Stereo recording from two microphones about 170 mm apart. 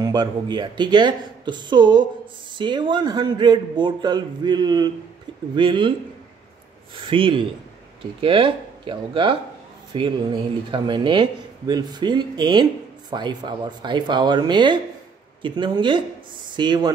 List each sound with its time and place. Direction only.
0.0 s speech: 25° right (ahead or behind)
7.1 s speech: 30° right (ahead or behind)